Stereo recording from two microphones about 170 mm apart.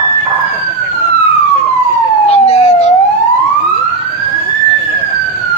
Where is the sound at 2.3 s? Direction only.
40° left (ahead or behind).